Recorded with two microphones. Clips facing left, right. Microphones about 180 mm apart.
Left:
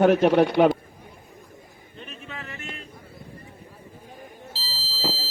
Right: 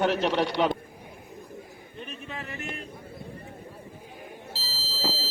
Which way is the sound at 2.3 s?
15° right (ahead or behind).